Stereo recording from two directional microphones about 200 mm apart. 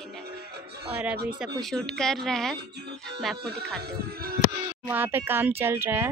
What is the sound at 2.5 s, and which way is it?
Speech, 55° right (ahead or behind).